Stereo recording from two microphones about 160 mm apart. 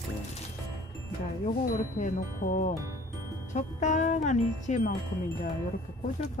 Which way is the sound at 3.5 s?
50° left (ahead or behind).